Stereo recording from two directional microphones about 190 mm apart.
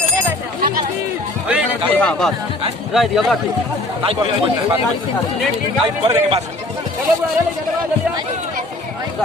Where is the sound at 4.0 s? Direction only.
25° right (ahead or behind).